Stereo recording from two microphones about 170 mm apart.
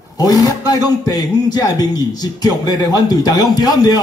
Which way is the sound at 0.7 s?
25° left (ahead or behind).